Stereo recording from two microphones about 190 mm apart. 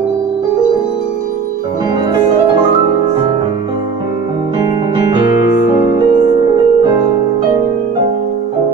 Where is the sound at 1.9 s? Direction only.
20° right (ahead or behind).